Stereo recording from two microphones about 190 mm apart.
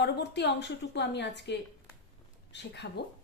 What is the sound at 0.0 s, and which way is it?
A woman's voice, 60° left (ahead or behind).